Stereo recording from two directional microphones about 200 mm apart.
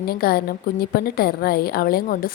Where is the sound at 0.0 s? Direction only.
50° left (ahead or behind).